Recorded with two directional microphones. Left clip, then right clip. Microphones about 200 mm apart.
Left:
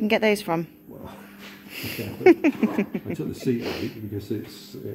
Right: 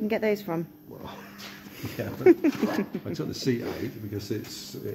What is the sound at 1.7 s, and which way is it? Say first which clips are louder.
Speech: left 3 dB; 5° right (ahead or behind).